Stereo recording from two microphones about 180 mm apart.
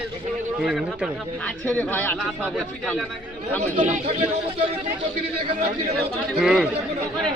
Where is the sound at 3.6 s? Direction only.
40° right (ahead or behind).